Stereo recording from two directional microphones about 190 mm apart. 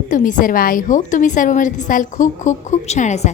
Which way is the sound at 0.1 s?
45° left (ahead or behind).